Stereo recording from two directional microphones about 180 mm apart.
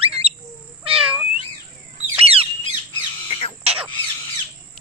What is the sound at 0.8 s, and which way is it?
Cat, 30° right (ahead or behind).